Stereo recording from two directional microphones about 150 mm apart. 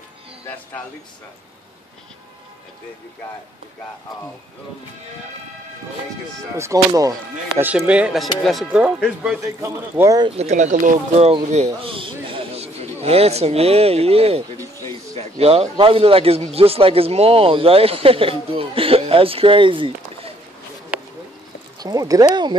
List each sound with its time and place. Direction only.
6.5 s speech: 20° right (ahead or behind)
7.6 s speech: 10° right (ahead or behind)
9.4 s speech: 20° right (ahead or behind)
10.2 s speech: 45° right (ahead or behind)
11.2 s a man's voice: 45° right (ahead or behind)
14.6 s a sound: 20° left (ahead or behind)
15.1 s speech: 40° right (ahead or behind)
20.9 s a sound: 10° right (ahead or behind)
21.7 s speech: 25° right (ahead or behind)